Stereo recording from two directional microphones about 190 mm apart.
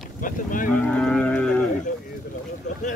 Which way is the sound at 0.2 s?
45° left (ahead or behind).